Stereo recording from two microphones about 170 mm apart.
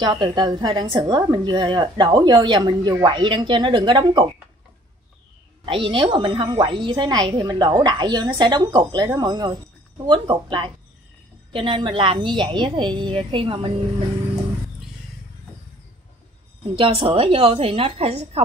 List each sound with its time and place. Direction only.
0.0 s a woman's voice: 25° right (ahead or behind)
5.7 s a woman's voice: 30° right (ahead or behind)
16.7 s a woman's voice: 30° right (ahead or behind)